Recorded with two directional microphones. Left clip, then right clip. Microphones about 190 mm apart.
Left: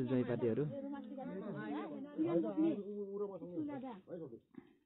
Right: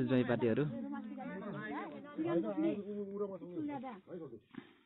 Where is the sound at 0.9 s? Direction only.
50° left (ahead or behind).